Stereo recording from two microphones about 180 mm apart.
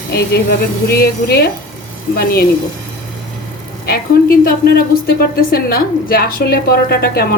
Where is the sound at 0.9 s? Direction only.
60° left (ahead or behind).